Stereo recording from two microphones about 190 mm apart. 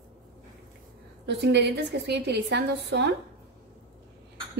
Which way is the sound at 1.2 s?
65° right (ahead or behind).